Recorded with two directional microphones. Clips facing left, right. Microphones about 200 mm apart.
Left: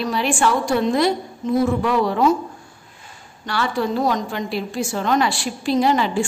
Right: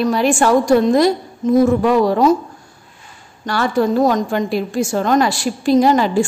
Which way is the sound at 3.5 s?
45° right (ahead or behind).